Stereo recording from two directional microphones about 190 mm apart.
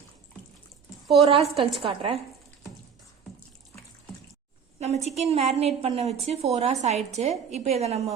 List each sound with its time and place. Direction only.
1.1 s a woman's voice: 30° right (ahead or behind)
4.8 s a woman's voice: 35° right (ahead or behind)